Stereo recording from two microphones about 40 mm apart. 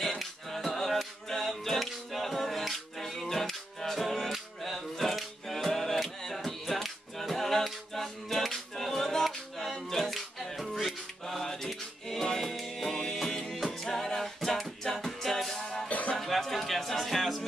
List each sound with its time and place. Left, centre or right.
0.0 s music: centre
15.9 s music: left
16.2 s music: centre